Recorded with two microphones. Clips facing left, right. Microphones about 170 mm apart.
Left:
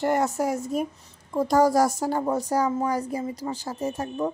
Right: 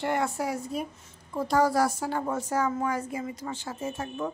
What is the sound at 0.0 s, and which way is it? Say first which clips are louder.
A woman's voice: left 5 dB; 40° left (ahead or behind).